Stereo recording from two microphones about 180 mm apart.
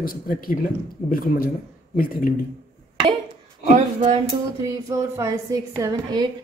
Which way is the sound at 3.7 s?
30° right (ahead or behind).